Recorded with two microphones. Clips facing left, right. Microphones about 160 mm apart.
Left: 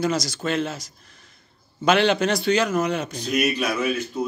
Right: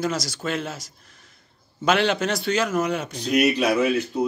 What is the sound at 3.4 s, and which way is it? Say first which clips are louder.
Speech: right 4 dB; 30° right (ahead or behind).